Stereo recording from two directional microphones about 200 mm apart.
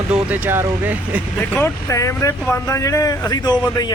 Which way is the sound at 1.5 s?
15° left (ahead or behind).